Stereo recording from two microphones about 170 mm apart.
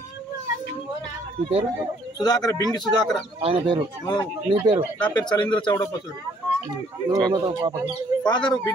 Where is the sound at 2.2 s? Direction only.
25° left (ahead or behind).